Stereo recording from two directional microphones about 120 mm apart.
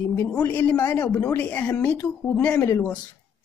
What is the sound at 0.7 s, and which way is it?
Speech, 30° left (ahead or behind).